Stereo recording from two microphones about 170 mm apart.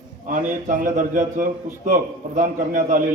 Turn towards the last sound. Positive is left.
turn(degrees=-50)  # may be behind; listen again after turning